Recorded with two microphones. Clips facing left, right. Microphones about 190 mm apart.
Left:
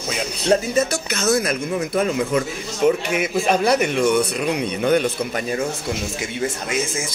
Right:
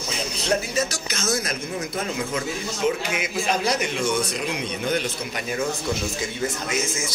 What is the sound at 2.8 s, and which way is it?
A man's voice, 55° left (ahead or behind).